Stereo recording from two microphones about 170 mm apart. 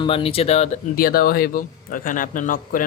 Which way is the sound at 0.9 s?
60° left (ahead or behind).